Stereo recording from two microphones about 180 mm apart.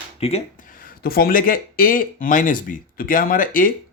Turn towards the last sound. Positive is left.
turn(degrees=50)  # may be behind; listen again after turning